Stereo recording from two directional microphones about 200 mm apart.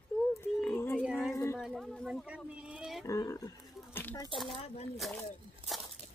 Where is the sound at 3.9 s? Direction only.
15° left (ahead or behind).